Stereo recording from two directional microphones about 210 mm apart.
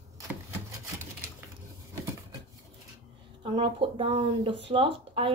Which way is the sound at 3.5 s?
25° right (ahead or behind).